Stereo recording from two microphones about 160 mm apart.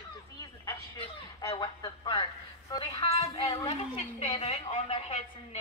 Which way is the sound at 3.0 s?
40° left (ahead or behind).